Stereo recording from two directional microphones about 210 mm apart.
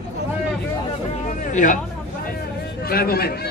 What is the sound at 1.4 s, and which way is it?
Hubbub, 35° left (ahead or behind).